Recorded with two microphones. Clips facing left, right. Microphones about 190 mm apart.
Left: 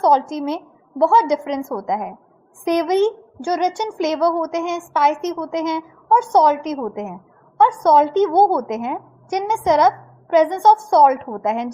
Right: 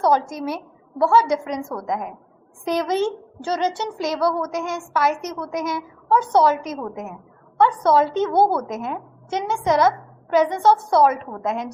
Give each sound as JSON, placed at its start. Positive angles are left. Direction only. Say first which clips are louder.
{"t": 0.0, "sound": "a woman's voice", "louder": "left 3 dB", "side_deg": 20}